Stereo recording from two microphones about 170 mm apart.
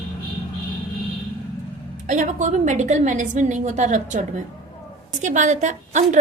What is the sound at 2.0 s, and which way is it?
A woman's voice, 45° right (ahead or behind).